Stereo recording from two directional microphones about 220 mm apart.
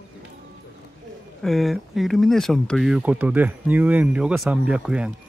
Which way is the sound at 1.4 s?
Centre (ahead or behind).